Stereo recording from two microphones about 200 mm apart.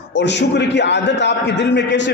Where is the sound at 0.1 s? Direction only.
60° left (ahead or behind).